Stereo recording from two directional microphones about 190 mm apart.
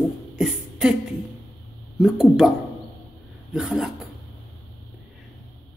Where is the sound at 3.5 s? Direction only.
Centre (ahead or behind).